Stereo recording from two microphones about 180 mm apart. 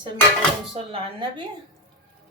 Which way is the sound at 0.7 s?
30° right (ahead or behind).